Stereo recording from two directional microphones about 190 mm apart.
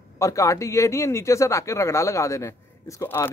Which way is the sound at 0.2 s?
15° left (ahead or behind).